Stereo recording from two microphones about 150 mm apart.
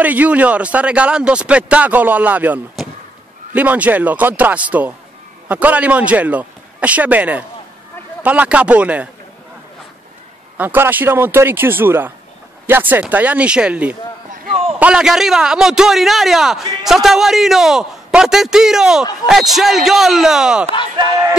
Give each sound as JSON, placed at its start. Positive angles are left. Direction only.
{"t": 0.0, "sound": "a man's voice", "side_deg": -10}
{"t": 10.6, "sound": "a man's voice", "side_deg": -10}
{"t": 14.5, "sound": "a sound", "side_deg": -40}
{"t": 14.8, "sound": "a man's voice", "side_deg": -5}